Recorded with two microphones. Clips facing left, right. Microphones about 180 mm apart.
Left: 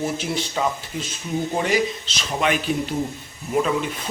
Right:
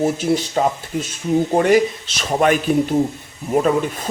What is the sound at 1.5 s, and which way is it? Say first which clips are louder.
Speech: right 7 dB; 55° right (ahead or behind).